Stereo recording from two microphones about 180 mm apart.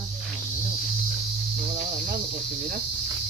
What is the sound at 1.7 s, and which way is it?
Cricket, 50° right (ahead or behind).